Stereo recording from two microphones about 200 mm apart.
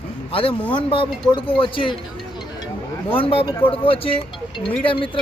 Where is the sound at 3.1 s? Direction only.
30° left (ahead or behind).